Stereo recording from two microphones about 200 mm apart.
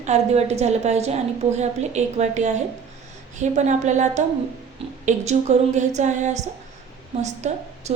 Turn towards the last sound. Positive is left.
turn(degrees=-35)  # may be behind; listen again after turning